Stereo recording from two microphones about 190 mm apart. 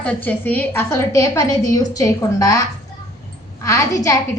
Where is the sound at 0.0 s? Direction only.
10° left (ahead or behind).